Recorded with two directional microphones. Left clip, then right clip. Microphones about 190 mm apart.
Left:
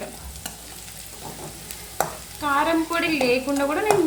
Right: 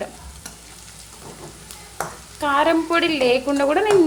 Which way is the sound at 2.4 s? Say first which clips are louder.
Right 3 dB; 45° right (ahead or behind).